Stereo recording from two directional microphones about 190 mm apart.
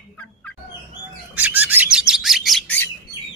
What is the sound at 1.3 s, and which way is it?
Bird, 10° right (ahead or behind).